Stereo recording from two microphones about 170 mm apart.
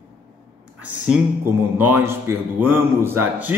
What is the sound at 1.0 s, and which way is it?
A man's voice, 10° right (ahead or behind).